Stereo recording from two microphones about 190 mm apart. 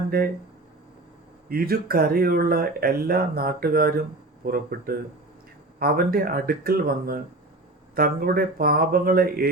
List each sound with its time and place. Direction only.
0.1 s speech: 55° right (ahead or behind)
1.5 s speech: 50° right (ahead or behind)